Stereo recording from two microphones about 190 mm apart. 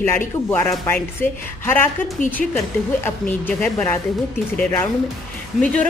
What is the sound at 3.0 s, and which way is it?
Speech, 10° left (ahead or behind).